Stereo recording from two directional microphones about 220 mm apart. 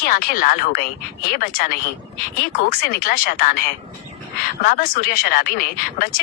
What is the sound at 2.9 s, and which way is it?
Speech, 40° left (ahead or behind).